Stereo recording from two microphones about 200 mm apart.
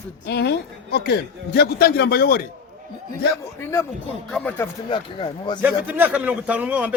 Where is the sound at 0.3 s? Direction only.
55° left (ahead or behind).